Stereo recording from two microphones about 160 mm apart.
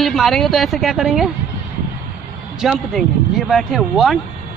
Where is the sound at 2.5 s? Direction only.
Centre (ahead or behind).